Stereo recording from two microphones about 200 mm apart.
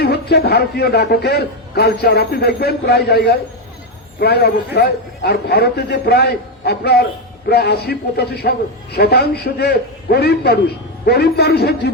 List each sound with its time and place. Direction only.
0.0 s a man's voice: 55° left (ahead or behind)